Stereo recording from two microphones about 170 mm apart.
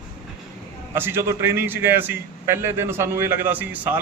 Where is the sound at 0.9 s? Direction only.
15° right (ahead or behind).